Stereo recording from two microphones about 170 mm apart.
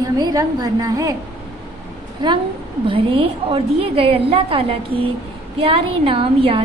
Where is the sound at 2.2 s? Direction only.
25° right (ahead or behind).